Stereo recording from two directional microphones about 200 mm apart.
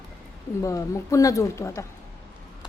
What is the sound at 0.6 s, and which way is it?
A woman's voice, 15° left (ahead or behind).